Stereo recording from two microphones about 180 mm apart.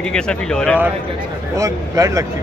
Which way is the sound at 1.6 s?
20° right (ahead or behind).